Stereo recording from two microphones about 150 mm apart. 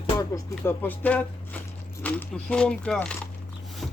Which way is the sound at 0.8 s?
10° left (ahead or behind).